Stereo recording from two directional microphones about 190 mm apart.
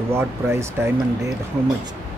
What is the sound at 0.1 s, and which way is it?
Speech, 15° right (ahead or behind).